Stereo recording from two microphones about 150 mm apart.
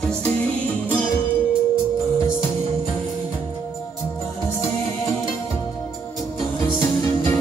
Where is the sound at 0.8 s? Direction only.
10° left (ahead or behind).